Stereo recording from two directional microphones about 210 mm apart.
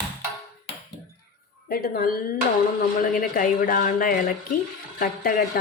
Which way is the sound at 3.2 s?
40° left (ahead or behind).